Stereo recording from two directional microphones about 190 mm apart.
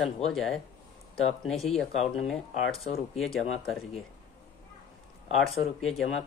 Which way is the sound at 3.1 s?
Centre (ahead or behind).